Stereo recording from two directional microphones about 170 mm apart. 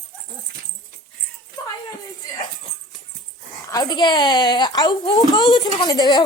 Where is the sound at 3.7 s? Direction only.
25° left (ahead or behind).